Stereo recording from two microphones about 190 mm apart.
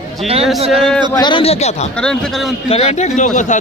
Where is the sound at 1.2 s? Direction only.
25° left (ahead or behind).